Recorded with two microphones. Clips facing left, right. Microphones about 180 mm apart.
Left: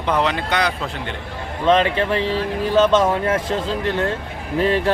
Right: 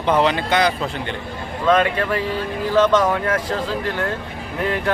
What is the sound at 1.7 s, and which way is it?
Speech, 25° left (ahead or behind).